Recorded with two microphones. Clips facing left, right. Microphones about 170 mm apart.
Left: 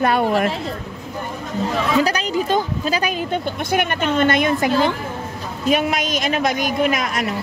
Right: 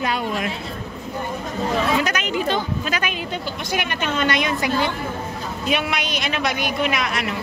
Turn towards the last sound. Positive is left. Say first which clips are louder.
# left 3 dB
turn(degrees=45)  # may be behind; listen again after turning